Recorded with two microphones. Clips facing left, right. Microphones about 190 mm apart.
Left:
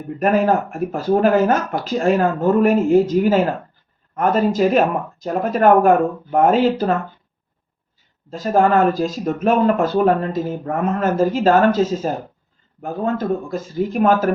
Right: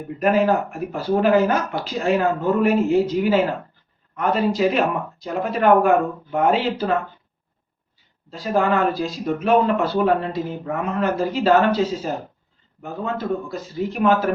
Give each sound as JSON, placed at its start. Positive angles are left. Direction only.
{"t": 0.2, "sound": "speech", "side_deg": 50}
{"t": 8.3, "sound": "speech", "side_deg": 45}